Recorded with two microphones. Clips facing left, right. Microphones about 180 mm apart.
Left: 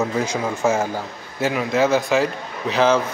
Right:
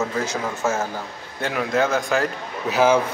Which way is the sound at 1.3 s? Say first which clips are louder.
Left 2 dB; 5° left (ahead or behind).